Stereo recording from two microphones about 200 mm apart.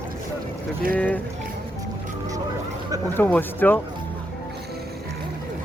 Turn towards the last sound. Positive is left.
turn(degrees=10)  # may be behind; listen again after turning